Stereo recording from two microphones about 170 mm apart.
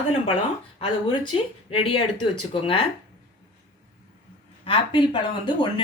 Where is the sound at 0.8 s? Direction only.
30° left (ahead or behind).